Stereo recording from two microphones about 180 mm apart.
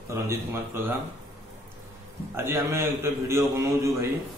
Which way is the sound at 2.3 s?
15° right (ahead or behind).